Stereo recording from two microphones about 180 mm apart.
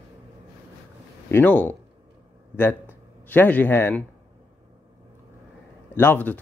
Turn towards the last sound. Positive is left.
turn(degrees=10)  # may be behind; listen again after turning